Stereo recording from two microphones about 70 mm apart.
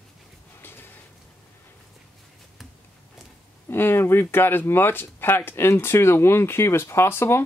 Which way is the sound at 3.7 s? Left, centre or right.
Left.